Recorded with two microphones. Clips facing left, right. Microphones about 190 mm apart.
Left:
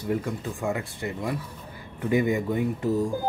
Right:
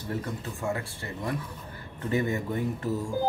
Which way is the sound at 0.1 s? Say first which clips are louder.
Left 5 dB; 15° left (ahead or behind).